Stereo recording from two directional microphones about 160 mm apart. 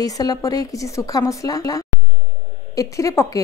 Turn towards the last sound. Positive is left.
turn(degrees=20)  # may be behind; listen again after turning